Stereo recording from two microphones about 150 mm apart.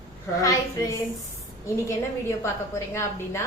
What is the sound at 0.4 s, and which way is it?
A woman's voice, 20° left (ahead or behind).